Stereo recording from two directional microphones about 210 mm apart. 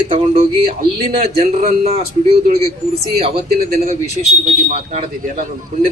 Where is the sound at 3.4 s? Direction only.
45° right (ahead or behind).